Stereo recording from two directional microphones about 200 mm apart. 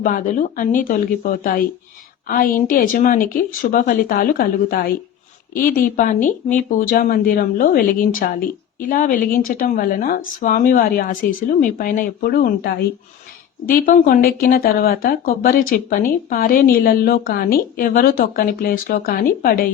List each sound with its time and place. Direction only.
0.0 s speech: 40° left (ahead or behind)